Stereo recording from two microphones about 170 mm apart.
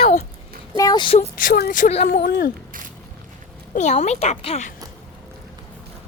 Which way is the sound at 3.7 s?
45° left (ahead or behind).